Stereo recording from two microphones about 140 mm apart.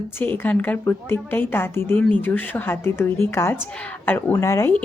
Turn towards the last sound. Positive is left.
turn(degrees=20)  # may be behind; listen again after turning